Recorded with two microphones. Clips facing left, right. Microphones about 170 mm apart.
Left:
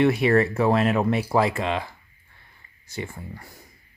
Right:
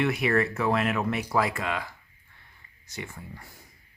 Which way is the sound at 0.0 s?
30° left (ahead or behind).